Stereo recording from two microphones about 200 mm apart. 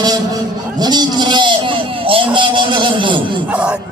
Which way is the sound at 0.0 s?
20° right (ahead or behind).